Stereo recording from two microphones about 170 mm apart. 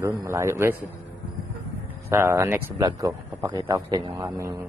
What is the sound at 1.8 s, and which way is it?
A man's voice, 15° right (ahead or behind).